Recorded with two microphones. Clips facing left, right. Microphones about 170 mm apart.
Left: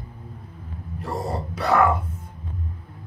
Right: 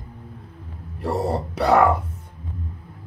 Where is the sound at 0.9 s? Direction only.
75° right (ahead or behind).